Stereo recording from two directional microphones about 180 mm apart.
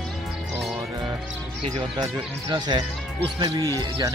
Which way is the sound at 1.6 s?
30° right (ahead or behind).